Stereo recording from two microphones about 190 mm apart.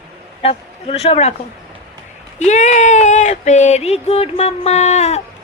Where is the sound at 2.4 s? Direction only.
40° left (ahead or behind).